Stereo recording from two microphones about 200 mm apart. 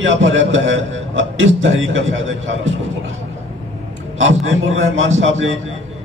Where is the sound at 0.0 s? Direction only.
70° right (ahead or behind).